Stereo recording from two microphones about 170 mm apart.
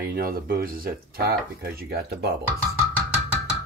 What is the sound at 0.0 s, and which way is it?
Speech, 60° right (ahead or behind).